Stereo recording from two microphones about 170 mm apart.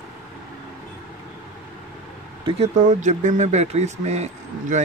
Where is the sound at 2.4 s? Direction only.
40° right (ahead or behind).